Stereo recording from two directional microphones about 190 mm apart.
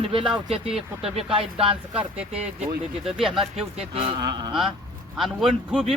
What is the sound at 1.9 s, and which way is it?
A man's voice, 5° right (ahead or behind).